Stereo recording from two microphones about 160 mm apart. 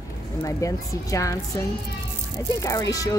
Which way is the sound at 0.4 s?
20° left (ahead or behind).